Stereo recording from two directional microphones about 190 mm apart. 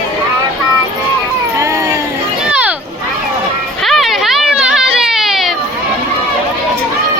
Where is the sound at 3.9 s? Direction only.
Centre (ahead or behind).